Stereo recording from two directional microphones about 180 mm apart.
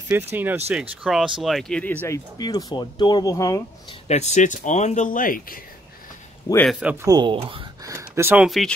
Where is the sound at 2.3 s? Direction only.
25° left (ahead or behind).